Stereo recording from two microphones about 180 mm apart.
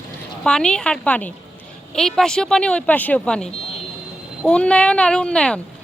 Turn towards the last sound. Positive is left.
turn(degrees=5)  # may be behind; listen again after turning